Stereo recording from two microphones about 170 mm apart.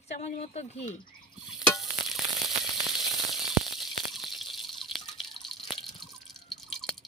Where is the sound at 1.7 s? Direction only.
Centre (ahead or behind).